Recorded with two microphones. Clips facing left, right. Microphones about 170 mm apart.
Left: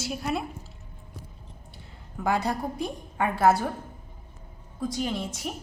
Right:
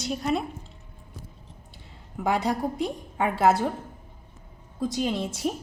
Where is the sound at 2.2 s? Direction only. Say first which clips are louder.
Right 2 dB; 20° right (ahead or behind).